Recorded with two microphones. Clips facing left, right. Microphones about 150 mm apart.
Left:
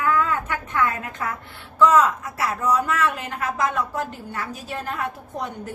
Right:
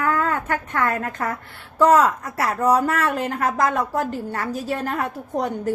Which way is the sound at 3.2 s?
40° right (ahead or behind).